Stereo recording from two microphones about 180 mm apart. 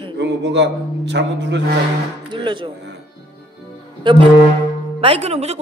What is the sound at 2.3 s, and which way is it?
Speech, 25° right (ahead or behind).